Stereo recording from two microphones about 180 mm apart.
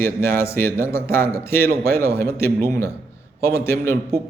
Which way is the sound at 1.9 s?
15° left (ahead or behind).